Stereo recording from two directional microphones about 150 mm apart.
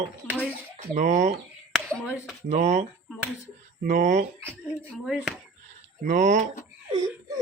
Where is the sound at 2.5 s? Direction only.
55° right (ahead or behind).